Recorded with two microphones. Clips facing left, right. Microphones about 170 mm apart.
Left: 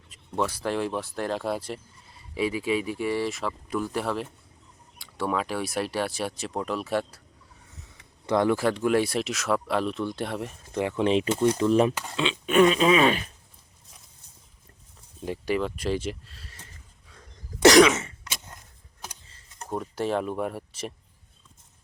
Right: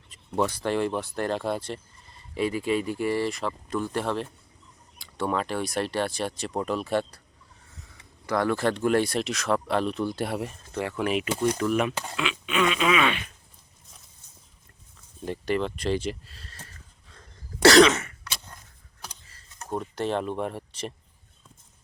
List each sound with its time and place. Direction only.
0.1 s speech: 5° left (ahead or behind)
8.3 s speech: 20° left (ahead or behind)
8.5 s speech: 5° left (ahead or behind)
10.7 s speech: 15° left (ahead or behind)
12.1 s a sound: 30° left (ahead or behind)
12.5 s a sound: 40° left (ahead or behind)
15.2 s speech: 5° left (ahead or behind)
16.5 s cough: 15° left (ahead or behind)
18.3 s a sound: 20° left (ahead or behind)
19.7 s speech: 5° left (ahead or behind)